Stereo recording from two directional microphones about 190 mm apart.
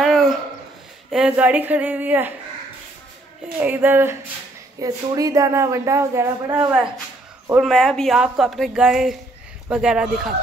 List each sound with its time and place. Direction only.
0.0 s a sound: centre (ahead or behind)
1.1 s speech: 5° right (ahead or behind)
3.5 s a woman's voice: 10° right (ahead or behind)